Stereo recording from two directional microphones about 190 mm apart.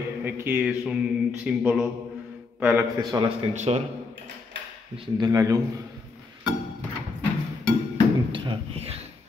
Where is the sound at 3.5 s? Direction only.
35° right (ahead or behind).